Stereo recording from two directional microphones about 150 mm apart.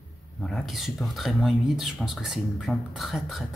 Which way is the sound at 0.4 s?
5° left (ahead or behind).